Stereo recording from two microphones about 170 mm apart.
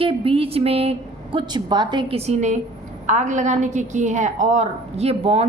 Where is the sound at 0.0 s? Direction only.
30° right (ahead or behind).